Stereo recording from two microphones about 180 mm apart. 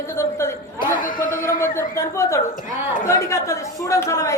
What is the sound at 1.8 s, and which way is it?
Speech, 15° left (ahead or behind).